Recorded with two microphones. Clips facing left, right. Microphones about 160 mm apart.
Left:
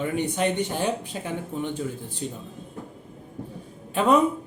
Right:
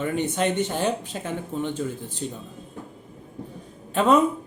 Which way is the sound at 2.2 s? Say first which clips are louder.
Right 1 dB; 40° right (ahead or behind).